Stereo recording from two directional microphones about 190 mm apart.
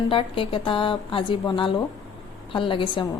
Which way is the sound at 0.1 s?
30° left (ahead or behind).